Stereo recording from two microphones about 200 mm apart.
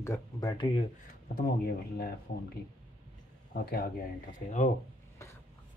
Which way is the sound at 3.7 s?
45° left (ahead or behind).